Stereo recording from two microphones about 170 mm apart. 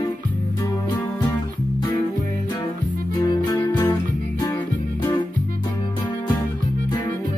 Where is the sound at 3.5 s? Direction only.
15° left (ahead or behind).